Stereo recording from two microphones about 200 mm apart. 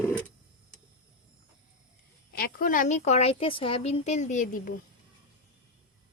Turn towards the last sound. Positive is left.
turn(degrees=40)  # may be behind; listen again after turning